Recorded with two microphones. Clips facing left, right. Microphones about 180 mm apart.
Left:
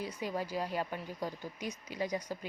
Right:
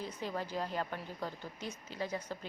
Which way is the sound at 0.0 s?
10° left (ahead or behind).